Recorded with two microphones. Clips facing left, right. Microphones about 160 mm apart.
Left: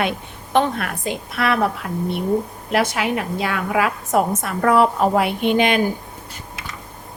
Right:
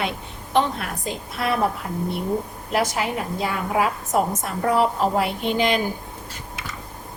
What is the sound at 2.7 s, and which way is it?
A woman's voice, 80° left.